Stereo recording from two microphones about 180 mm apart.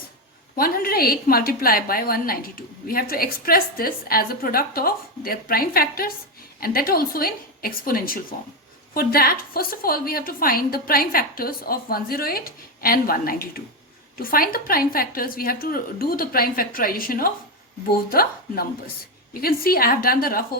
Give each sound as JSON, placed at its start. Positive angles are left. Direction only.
{"t": 0.5, "sound": "a woman's voice", "side_deg": 55}